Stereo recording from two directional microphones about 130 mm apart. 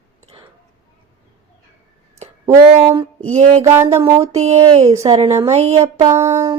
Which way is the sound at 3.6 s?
20° right (ahead or behind).